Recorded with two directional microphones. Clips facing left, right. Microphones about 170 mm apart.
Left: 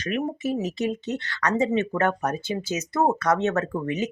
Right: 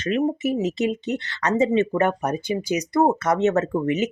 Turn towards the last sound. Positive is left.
turn(degrees=-20)  # may be behind; listen again after turning